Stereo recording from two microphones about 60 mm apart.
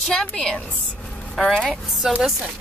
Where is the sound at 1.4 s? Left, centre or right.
Centre.